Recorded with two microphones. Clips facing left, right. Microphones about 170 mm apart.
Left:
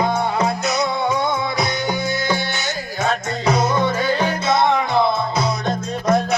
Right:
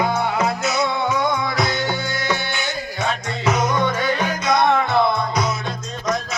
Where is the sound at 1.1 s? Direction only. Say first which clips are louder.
Even; 25° left (ahead or behind).